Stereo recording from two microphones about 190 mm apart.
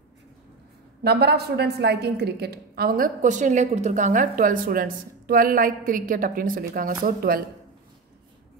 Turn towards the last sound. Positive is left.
turn(degrees=-50)  # may be behind; listen again after turning